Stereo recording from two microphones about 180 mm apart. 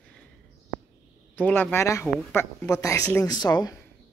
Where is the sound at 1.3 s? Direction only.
10° left (ahead or behind).